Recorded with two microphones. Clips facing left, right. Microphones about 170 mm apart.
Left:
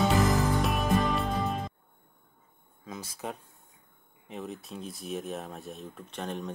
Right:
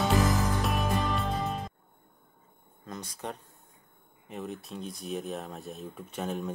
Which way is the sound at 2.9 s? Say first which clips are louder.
Even; 5° left (ahead or behind).